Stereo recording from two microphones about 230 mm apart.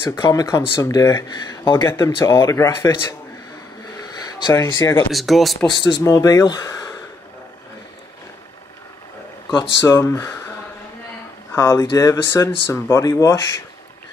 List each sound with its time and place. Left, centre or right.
0.0 s speech: centre
4.2 s speech: centre
5.1 s speech: centre
5.7 s speech: left
9.8 s speech: centre
11.5 s speech: centre